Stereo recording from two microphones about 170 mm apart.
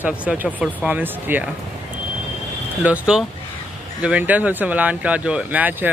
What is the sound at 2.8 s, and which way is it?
Speech, 5° right (ahead or behind).